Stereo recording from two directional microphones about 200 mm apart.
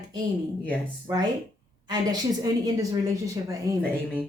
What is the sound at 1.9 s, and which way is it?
A woman's voice, 20° right (ahead or behind).